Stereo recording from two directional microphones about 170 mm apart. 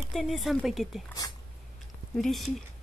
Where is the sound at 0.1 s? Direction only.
Centre (ahead or behind).